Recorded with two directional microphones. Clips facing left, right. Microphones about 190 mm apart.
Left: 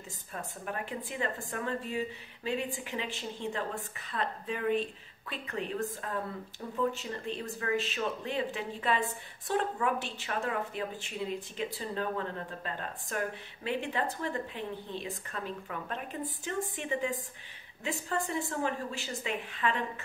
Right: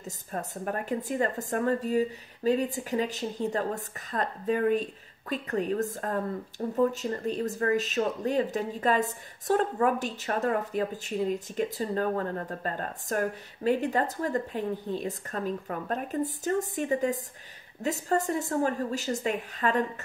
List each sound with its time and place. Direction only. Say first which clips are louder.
0.0 s speech: right 6 dB; 40° right (ahead or behind)